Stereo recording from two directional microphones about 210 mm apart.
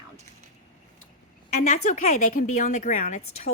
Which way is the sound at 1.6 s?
35° left (ahead or behind).